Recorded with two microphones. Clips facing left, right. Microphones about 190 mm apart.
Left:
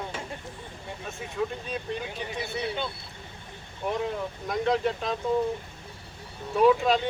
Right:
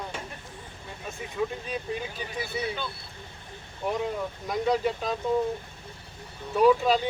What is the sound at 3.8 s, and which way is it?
Speech, centre (ahead or behind).